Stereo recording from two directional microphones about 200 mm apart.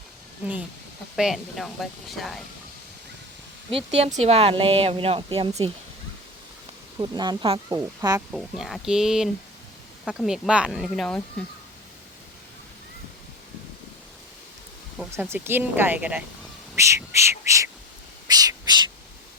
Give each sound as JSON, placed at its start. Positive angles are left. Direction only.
{"t": 1.1, "sound": "speech", "side_deg": 0}
{"t": 3.7, "sound": "speech", "side_deg": -30}
{"t": 7.0, "sound": "speech", "side_deg": -20}
{"t": 8.3, "sound": "speech", "side_deg": 0}
{"t": 15.1, "sound": "speech", "side_deg": -10}
{"t": 18.3, "sound": "owl", "side_deg": -20}